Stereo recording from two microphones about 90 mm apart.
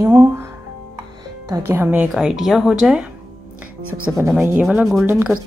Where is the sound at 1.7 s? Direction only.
25° right (ahead or behind).